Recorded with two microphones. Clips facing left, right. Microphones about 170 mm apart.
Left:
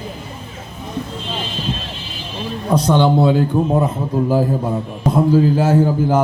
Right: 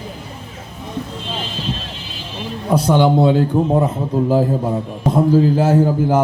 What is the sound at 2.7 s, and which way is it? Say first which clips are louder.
Speech: right 1 dB; 10° right (ahead or behind).